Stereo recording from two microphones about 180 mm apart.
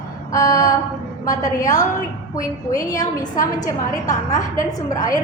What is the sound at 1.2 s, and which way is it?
A woman's voice, 20° left (ahead or behind).